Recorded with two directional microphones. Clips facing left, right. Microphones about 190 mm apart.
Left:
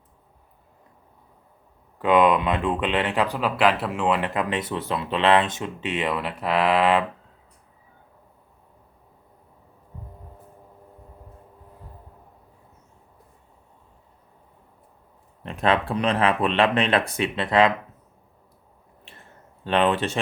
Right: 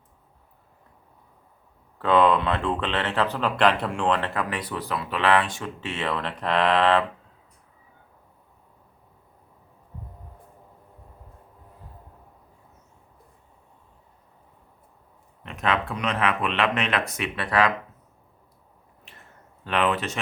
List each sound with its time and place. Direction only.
2.0 s speech: 15° left (ahead or behind)
15.4 s speech: 30° left (ahead or behind)
19.6 s speech: 30° left (ahead or behind)